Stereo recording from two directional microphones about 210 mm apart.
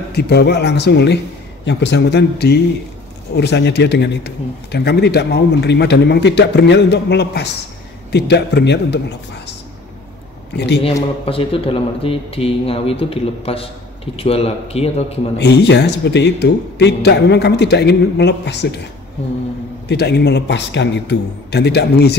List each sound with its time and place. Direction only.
0.1 s a man's voice: 50° left (ahead or behind)
10.5 s a man's voice: 55° left (ahead or behind)
11.2 s speech: 25° left (ahead or behind)
15.3 s a man's voice: 55° left (ahead or behind)
19.9 s a man's voice: 50° left (ahead or behind)